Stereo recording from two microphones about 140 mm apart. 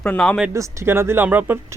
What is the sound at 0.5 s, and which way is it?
Speech, 20° right (ahead or behind).